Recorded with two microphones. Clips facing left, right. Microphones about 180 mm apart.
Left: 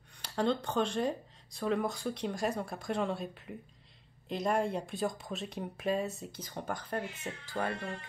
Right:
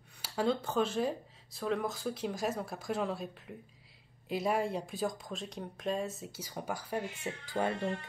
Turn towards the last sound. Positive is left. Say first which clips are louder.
# right 2 dB
turn(degrees=-20)  # may be behind; listen again after turning